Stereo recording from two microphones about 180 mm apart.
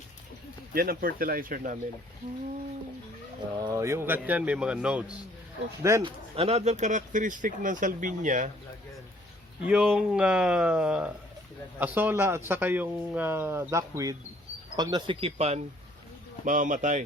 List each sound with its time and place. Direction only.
0.7 s speech: 55° right (ahead or behind)
3.6 s speech: 20° right (ahead or behind)
5.8 s speech: 15° right (ahead or behind)
6.1 s speech: 30° right (ahead or behind)
9.6 s speech: 5° right (ahead or behind); by 15.6 s 35° right (ahead or behind)
16.5 s speech: 45° right (ahead or behind)